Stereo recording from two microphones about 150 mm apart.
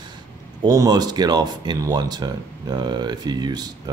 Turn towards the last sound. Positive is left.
turn(degrees=-25)  # may be behind; listen again after turning